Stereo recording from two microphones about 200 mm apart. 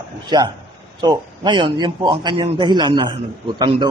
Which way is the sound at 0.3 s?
20° right (ahead or behind).